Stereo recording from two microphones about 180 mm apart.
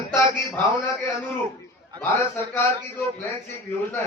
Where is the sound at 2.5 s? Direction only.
10° left (ahead or behind).